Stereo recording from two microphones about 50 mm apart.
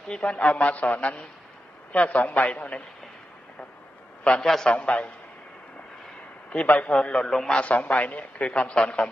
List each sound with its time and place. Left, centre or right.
0.1 s a man's voice: left
4.4 s a man's voice: centre
4.6 s a man's voice: left
6.5 s a man's voice: left; by 7.5 s centre
7.5 s a man's voice: left